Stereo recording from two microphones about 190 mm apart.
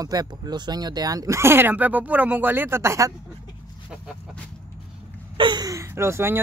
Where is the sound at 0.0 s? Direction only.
20° right (ahead or behind).